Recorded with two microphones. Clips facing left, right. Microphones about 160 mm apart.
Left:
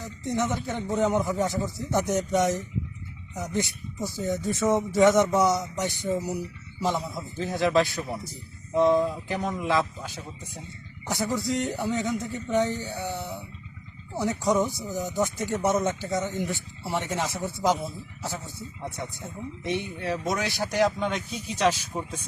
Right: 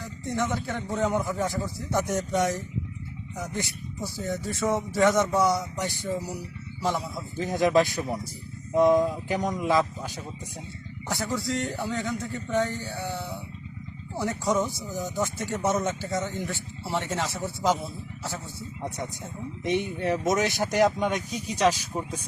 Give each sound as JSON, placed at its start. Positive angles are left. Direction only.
{"t": 0.0, "sound": "speech", "side_deg": 20}
{"t": 7.3, "sound": "speech", "side_deg": -15}
{"t": 11.1, "sound": "speech", "side_deg": 20}
{"t": 18.8, "sound": "speech", "side_deg": -15}